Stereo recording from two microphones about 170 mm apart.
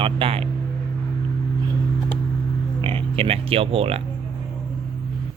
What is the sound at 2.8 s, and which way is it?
Speech, 30° right (ahead or behind).